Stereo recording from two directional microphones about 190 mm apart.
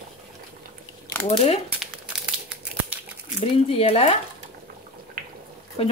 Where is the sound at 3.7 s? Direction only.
30° left (ahead or behind).